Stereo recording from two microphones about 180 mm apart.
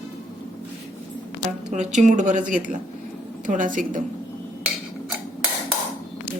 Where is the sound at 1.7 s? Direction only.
40° right (ahead or behind).